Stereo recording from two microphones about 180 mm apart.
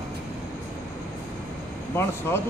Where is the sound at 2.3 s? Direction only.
15° left (ahead or behind).